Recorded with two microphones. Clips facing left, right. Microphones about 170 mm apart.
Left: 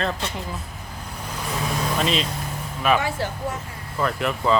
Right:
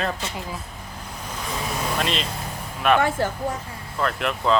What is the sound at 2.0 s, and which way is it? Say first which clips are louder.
Speech: left 2 dB; centre (ahead or behind).